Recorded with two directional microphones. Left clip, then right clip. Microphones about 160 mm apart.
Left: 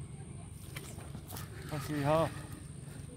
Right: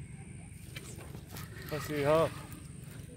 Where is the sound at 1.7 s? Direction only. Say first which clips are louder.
Right 3 dB; 50° right (ahead or behind).